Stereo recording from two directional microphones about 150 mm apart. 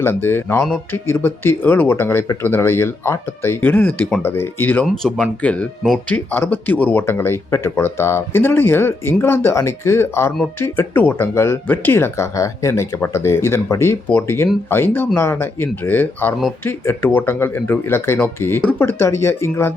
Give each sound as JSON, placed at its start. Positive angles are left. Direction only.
{"t": 0.0, "sound": "speech", "side_deg": 15}